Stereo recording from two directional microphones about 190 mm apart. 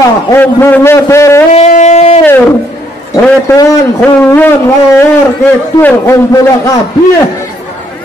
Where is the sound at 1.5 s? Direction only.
35° left (ahead or behind).